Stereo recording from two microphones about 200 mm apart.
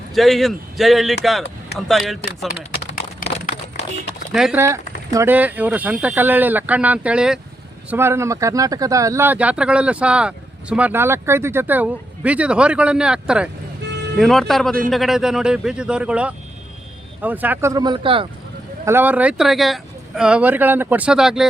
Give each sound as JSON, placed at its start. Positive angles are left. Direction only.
{"t": 0.1, "sound": "speech", "side_deg": 0}
{"t": 2.8, "sound": "a sound", "side_deg": 45}
{"t": 4.3, "sound": "speech", "side_deg": -5}
{"t": 4.6, "sound": "speech", "side_deg": -15}
{"t": 18.9, "sound": "speech", "side_deg": -10}